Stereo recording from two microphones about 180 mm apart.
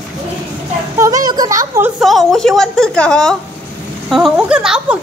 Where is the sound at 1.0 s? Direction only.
20° right (ahead or behind).